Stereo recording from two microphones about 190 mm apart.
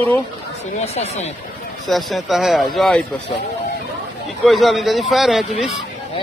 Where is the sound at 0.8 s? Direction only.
35° left (ahead or behind).